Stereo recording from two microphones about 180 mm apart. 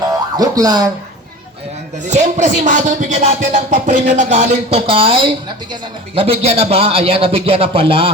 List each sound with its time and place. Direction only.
0.3 s speech: 20° right (ahead or behind)
2.0 s music: 40° right (ahead or behind)